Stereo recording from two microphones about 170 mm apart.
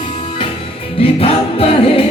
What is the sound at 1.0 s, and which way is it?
Music, 35° left (ahead or behind).